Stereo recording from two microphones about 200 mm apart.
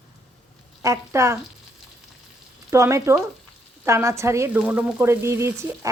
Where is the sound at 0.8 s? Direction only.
15° right (ahead or behind).